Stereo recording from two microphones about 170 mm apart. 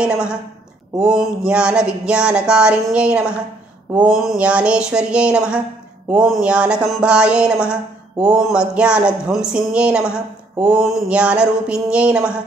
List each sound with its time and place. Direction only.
0.0 s speech: 5° right (ahead or behind)